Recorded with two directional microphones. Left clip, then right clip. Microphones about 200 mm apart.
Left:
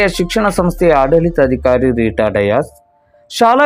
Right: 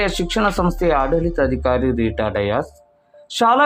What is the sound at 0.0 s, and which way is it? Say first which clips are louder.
Speech: left 5 dB; 15° left (ahead or behind).